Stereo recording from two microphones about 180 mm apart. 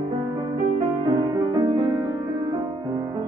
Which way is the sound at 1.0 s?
25° right (ahead or behind).